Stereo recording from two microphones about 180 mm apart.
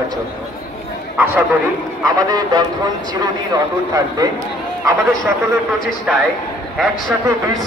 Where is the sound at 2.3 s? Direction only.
20° right (ahead or behind).